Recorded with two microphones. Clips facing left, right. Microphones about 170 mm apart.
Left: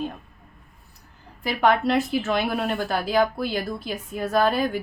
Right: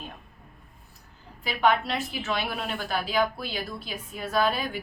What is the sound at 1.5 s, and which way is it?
A woman's voice, 45° left (ahead or behind).